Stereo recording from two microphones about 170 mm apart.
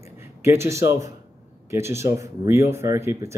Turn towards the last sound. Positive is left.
turn(degrees=-15)  # may be behind; listen again after turning